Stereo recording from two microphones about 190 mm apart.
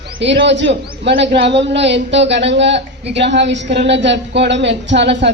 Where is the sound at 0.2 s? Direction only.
70° right (ahead or behind).